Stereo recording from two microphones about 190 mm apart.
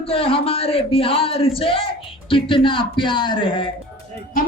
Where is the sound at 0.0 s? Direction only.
30° left (ahead or behind).